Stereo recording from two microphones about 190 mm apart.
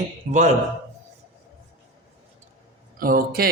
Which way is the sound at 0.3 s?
40° right (ahead or behind).